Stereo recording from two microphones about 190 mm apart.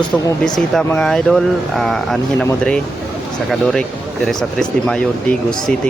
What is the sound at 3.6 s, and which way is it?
Speech, 5° left (ahead or behind).